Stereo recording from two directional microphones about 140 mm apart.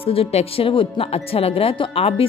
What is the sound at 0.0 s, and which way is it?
Music, 45° left (ahead or behind).